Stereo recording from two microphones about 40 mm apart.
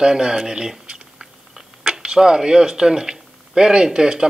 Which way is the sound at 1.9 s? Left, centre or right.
Centre.